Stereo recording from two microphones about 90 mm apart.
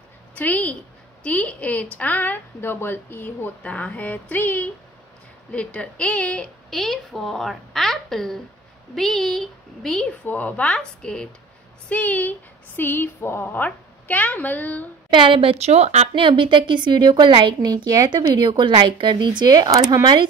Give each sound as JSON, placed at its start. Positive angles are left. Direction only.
{"t": 0.3, "sound": "a woman's voice", "side_deg": 15}
{"t": 10.2, "sound": "a woman's voice", "side_deg": 20}
{"t": 15.0, "sound": "a woman's voice", "side_deg": -65}
{"t": 18.5, "sound": "a woman's voice", "side_deg": -60}